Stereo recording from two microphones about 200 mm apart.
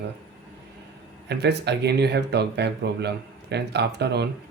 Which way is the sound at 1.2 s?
55° right (ahead or behind).